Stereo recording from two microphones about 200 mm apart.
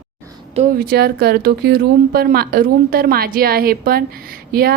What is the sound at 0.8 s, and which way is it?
A woman's voice, 50° right (ahead or behind).